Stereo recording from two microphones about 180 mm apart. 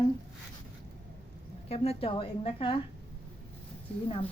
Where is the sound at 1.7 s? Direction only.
35° left (ahead or behind).